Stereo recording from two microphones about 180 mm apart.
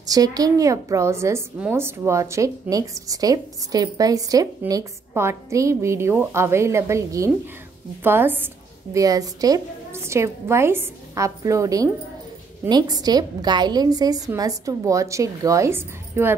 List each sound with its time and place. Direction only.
0.0 s a woman's voice: 20° right (ahead or behind)